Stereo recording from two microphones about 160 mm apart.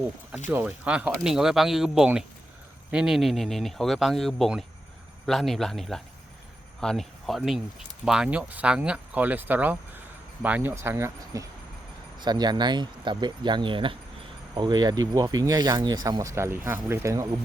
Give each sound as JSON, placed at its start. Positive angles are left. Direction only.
{"t": 0.4, "sound": "speech", "side_deg": -10}